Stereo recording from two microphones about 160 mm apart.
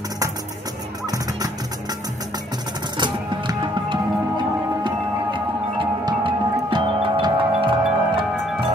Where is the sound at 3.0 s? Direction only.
30° right (ahead or behind).